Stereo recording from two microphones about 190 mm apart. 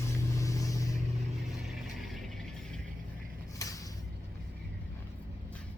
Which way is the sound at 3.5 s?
15° left (ahead or behind).